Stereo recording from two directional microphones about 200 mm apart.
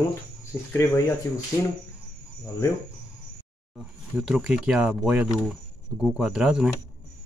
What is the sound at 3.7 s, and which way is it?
Speech, 5° right (ahead or behind).